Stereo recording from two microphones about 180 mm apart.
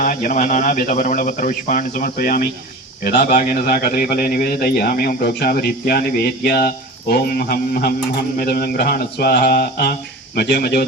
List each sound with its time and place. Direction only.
0.0 s a man's voice: 45° left (ahead or behind); by 10.8 s 65° left (ahead or behind)